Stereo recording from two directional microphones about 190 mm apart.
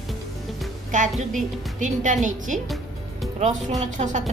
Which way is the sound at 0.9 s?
40° right (ahead or behind).